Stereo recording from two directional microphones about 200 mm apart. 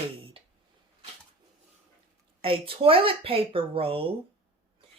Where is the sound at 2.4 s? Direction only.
25° right (ahead or behind).